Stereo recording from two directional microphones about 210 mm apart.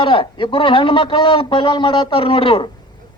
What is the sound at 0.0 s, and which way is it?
Speech, 25° left (ahead or behind).